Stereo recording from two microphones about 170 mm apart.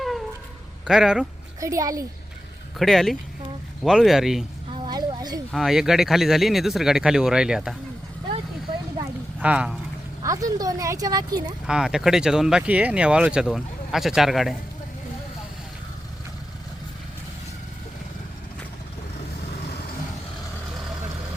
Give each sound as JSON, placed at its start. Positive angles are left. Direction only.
{"t": 0.0, "sound": "cat", "side_deg": 0}
{"t": 0.9, "sound": "speech", "side_deg": -5}
{"t": 1.6, "sound": "speech", "side_deg": -20}
{"t": 2.7, "sound": "speech", "side_deg": 0}
{"t": 4.7, "sound": "a sound", "side_deg": -25}
{"t": 5.5, "sound": "speech", "side_deg": 0}
{"t": 9.4, "sound": "speech", "side_deg": -5}
{"t": 10.2, "sound": "speech", "side_deg": -20}
{"t": 11.6, "sound": "speech", "side_deg": -5}